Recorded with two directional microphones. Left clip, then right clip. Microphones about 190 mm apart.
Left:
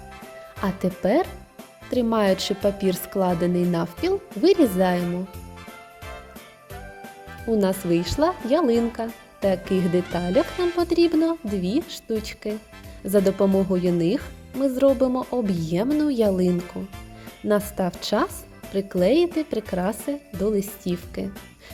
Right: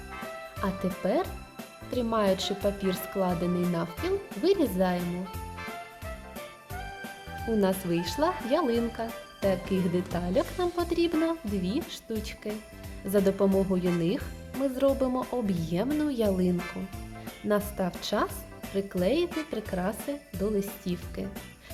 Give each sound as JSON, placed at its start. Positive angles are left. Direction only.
{"t": 0.6, "sound": "speech", "side_deg": 35}
{"t": 7.6, "sound": "speech", "side_deg": 25}
{"t": 17.5, "sound": "speech", "side_deg": 30}